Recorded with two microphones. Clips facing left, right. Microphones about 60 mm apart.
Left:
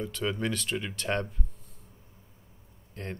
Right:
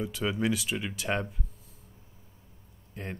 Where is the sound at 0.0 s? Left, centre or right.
Centre.